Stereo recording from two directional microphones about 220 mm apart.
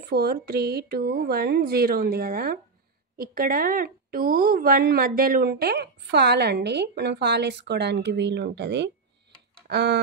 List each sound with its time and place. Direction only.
0.0 s speech: 45° right (ahead or behind)